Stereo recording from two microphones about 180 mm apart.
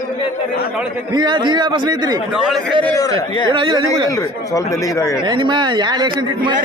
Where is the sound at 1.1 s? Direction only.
25° right (ahead or behind).